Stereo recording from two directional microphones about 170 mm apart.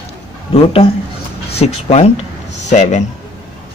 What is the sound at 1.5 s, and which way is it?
Speech, 40° left (ahead or behind).